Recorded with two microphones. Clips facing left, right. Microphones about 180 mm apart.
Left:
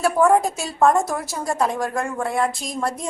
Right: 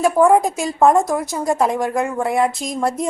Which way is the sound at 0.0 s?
15° right (ahead or behind).